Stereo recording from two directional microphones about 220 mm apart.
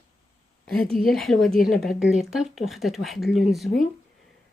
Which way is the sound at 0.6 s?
Centre (ahead or behind).